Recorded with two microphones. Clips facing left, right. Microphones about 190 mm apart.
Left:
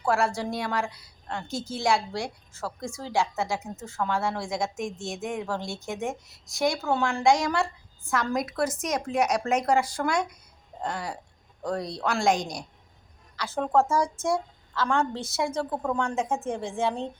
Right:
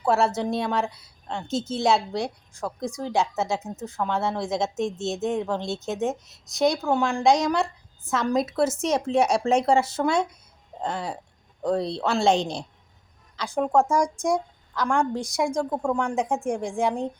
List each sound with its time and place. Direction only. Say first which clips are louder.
0.0 s a woman's voice: right 3 dB; 25° right (ahead or behind)
13.3 s a woman's voice: right 2 dB; 15° right (ahead or behind)